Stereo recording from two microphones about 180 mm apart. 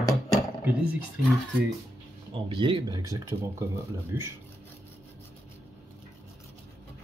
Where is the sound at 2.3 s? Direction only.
25° right (ahead or behind); by 4.3 s 10° right (ahead or behind).